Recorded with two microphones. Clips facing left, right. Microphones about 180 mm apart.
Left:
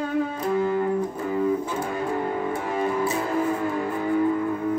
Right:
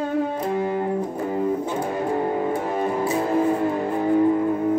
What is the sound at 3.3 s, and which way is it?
Music, 25° right (ahead or behind).